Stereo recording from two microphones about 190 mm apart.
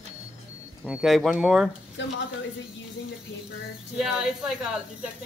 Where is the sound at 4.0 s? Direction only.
5° right (ahead or behind).